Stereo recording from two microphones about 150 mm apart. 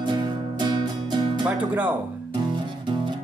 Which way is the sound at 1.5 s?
10° right (ahead or behind).